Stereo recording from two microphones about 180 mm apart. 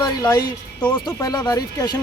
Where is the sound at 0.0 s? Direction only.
20° left (ahead or behind).